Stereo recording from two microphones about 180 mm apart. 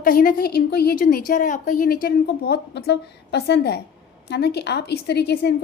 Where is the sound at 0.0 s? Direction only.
50° left (ahead or behind).